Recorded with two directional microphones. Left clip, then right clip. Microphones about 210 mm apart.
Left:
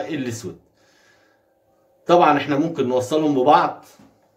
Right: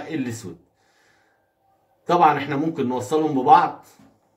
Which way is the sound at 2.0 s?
25° left (ahead or behind).